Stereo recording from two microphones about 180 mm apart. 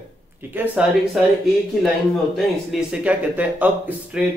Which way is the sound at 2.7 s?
5° right (ahead or behind).